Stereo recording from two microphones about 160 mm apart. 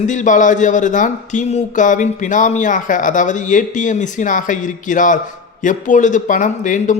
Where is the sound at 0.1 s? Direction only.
50° left (ahead or behind).